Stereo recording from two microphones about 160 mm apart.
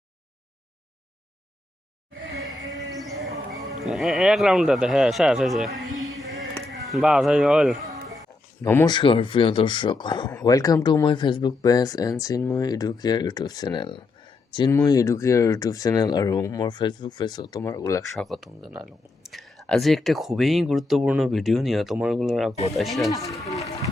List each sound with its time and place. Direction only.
2.6 s music: 20° right (ahead or behind)
3.0 s music: centre (ahead or behind)
3.7 s speech: centre (ahead or behind)
8.6 s speech: 15° left (ahead or behind)
8.9 s speech: 30° left (ahead or behind)
14.7 s speech: 20° left (ahead or behind)
18.2 s speech: centre (ahead or behind)
23.4 s speech: 20° left (ahead or behind)